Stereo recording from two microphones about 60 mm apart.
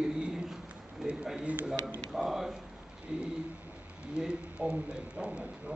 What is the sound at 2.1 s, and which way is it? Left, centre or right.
A man's voice, centre.